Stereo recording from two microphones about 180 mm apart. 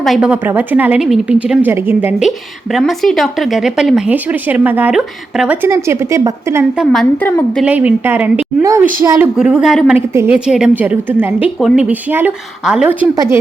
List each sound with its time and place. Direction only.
0.0 s speech: centre (ahead or behind)
6.7 s speech: 5° left (ahead or behind)
7.6 s speech: 10° right (ahead or behind)
9.4 s speech: 5° right (ahead or behind)